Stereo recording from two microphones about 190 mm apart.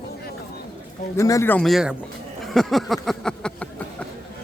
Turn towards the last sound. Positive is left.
turn(degrees=5)  # may be behind; listen again after turning